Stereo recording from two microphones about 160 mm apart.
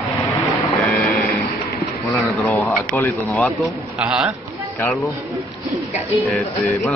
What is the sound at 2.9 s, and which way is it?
A man's voice, 10° left (ahead or behind).